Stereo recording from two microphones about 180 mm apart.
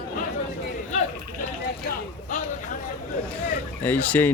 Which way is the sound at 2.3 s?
45° left (ahead or behind).